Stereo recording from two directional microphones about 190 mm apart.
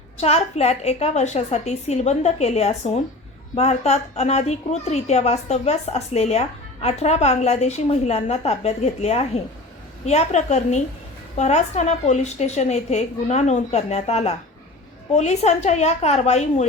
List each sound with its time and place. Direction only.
0.2 s a woman's voice: 35° left (ahead or behind)